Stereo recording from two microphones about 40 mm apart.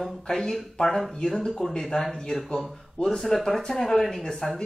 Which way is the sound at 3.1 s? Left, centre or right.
Centre.